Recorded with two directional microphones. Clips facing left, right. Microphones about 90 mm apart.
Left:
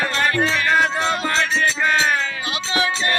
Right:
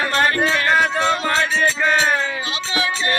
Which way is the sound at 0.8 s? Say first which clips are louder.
Right 1 dB; centre (ahead or behind).